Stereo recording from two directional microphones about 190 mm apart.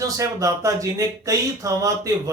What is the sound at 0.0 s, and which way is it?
Speech, 15° right (ahead or behind).